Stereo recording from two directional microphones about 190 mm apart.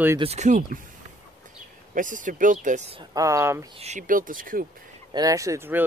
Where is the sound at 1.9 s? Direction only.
45° right (ahead or behind).